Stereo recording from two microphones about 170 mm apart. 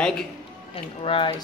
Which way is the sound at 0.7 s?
30° left (ahead or behind).